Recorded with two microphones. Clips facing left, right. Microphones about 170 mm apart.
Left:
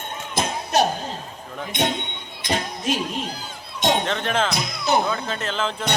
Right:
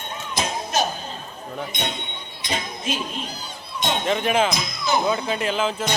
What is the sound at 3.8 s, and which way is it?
Speech, 75° left (ahead or behind).